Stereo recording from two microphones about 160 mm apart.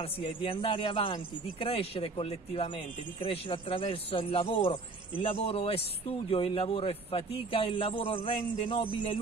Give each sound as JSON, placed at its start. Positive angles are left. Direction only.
{"t": 0.0, "sound": "a man's voice", "side_deg": 35}